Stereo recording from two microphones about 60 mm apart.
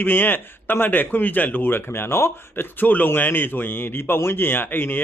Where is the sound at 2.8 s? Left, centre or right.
Left.